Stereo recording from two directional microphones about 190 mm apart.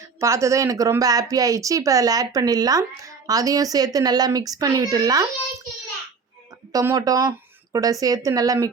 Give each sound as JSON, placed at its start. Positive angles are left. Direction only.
{"t": 0.2, "sound": "speech", "side_deg": -15}
{"t": 6.7, "sound": "speech", "side_deg": -20}